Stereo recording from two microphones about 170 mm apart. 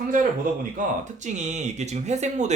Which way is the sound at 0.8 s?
45° right (ahead or behind).